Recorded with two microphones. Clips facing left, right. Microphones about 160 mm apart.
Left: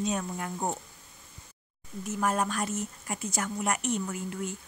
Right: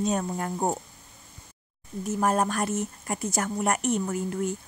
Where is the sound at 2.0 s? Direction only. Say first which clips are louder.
Right 4 dB; 40° right (ahead or behind).